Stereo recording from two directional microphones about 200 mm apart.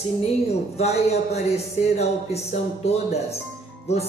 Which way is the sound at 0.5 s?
30° left (ahead or behind).